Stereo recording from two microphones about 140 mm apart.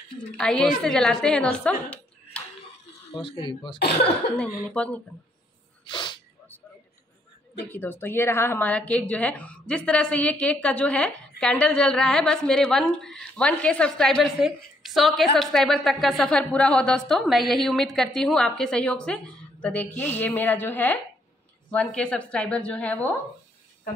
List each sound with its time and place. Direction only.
0.4 s a woman's voice: 5° left (ahead or behind)
3.2 s speech: 35° left (ahead or behind)
4.4 s a woman's voice: 10° left (ahead or behind)
5.9 s sneeze: 35° left (ahead or behind)
7.7 s a woman's voice: 15° left (ahead or behind)